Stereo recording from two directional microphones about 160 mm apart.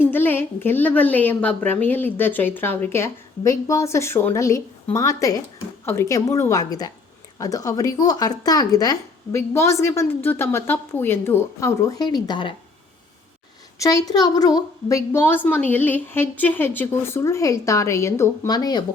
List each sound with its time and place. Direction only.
0.0 s a woman's voice: 10° left (ahead or behind); by 12.5 s 30° left (ahead or behind)
13.7 s a woman's voice: 20° left (ahead or behind)